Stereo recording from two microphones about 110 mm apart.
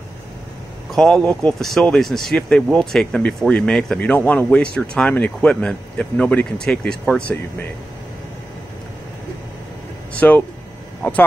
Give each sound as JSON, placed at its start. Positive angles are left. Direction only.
{"t": 0.9, "sound": "speech", "side_deg": 5}
{"t": 10.1, "sound": "speech", "side_deg": 15}